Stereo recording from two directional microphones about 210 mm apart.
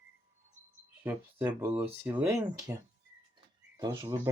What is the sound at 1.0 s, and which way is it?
Speech, 10° right (ahead or behind).